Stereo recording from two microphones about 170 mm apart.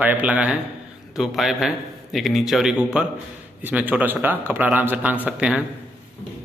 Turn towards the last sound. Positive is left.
turn(degrees=-5)  # may be behind; listen again after turning